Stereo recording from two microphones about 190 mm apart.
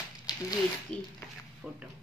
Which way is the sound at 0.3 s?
20° left (ahead or behind).